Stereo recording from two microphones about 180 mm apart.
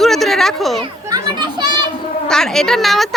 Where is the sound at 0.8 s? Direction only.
25° right (ahead or behind).